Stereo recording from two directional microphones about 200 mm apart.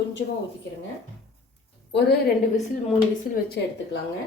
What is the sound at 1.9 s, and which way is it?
Speech, 55° left (ahead or behind).